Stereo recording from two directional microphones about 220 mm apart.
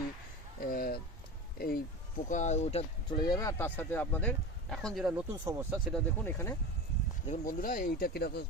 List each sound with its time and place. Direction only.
0.6 s a sound: 40° left (ahead or behind)
1.5 s speech: 40° left (ahead or behind); by 6.0 s 5° right (ahead or behind)
6.2 s speech: 10° left (ahead or behind)
7.3 s speech: 40° left (ahead or behind)